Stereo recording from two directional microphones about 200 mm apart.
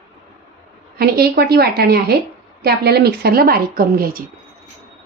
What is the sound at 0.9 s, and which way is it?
Speech, 50° right (ahead or behind).